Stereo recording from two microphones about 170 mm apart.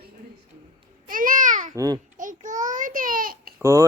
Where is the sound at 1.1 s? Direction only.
55° right (ahead or behind).